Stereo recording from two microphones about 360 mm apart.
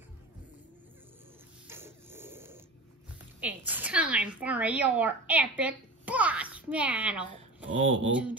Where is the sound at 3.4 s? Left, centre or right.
Centre.